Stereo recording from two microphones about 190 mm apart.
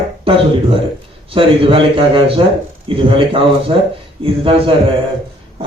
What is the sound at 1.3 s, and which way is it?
A man's voice, 30° right (ahead or behind).